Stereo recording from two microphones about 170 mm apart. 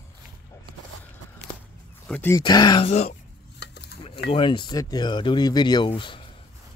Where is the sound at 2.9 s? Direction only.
40° left (ahead or behind).